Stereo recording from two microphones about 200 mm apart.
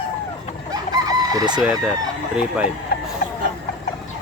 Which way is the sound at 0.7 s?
20° right (ahead or behind).